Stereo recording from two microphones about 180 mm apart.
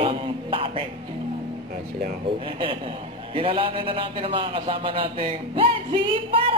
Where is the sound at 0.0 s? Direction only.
30° right (ahead or behind).